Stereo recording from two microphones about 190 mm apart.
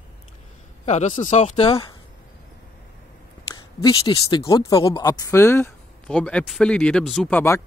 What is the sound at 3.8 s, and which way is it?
Speech, 20° left (ahead or behind).